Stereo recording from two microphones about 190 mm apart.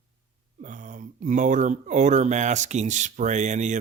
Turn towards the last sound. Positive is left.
turn(degrees=-40)  # may be behind; listen again after turning